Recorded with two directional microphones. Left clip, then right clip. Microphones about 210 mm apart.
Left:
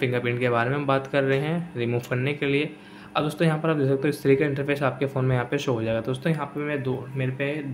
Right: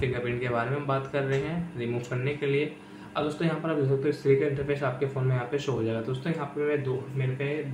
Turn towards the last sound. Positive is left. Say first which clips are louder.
# left 4 dB
turn(degrees=50)  # may be behind; listen again after turning